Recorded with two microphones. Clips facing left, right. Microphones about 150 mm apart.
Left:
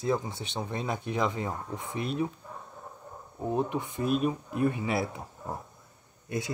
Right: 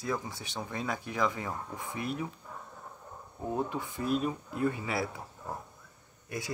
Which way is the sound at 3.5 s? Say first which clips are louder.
Left 4 dB; 20° left (ahead or behind).